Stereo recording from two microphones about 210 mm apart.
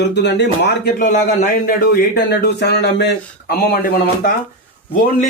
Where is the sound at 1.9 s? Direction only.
50° left (ahead or behind).